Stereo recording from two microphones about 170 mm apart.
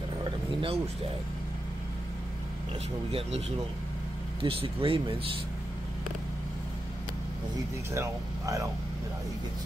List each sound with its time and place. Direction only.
0.2 s a sound: 30° right (ahead or behind)
3.1 s speech: 35° right (ahead or behind)
7.9 s speech: 15° right (ahead or behind)